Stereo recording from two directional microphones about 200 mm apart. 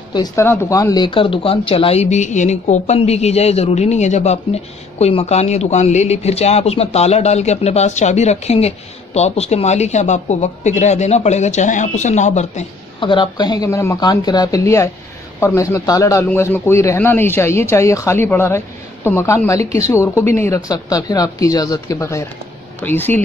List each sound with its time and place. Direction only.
0.1 s speech: 15° left (ahead or behind)